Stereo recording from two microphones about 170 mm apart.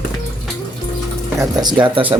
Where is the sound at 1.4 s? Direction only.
25° right (ahead or behind).